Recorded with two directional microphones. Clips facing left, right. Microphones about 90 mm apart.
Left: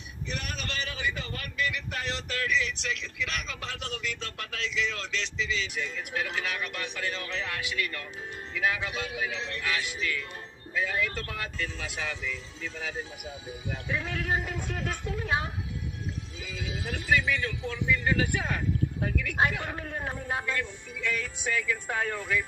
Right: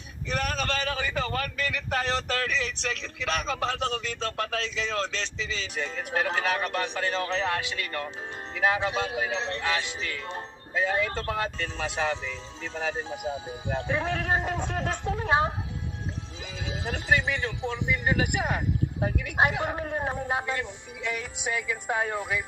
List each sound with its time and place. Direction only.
0.3 s a man's voice: 40° right (ahead or behind); by 22.4 s 15° right (ahead or behind)